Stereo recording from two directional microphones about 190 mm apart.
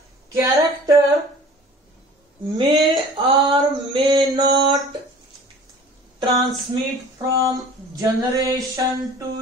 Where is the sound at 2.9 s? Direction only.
25° right (ahead or behind).